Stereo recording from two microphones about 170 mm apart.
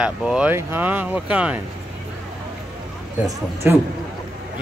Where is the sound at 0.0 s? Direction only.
5° right (ahead or behind).